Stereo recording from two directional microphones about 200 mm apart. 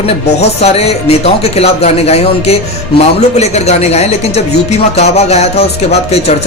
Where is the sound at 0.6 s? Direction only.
30° left (ahead or behind).